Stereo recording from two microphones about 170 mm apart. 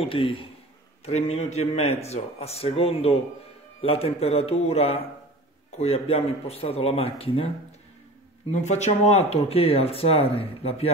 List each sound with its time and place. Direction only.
0.0 s speech: 30° left (ahead or behind)
8.5 s speech: 40° left (ahead or behind)